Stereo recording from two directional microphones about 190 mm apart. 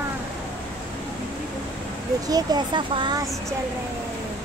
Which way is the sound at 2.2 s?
20° right (ahead or behind).